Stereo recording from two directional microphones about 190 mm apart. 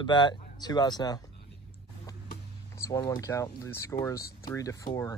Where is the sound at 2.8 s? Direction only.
15° left (ahead or behind).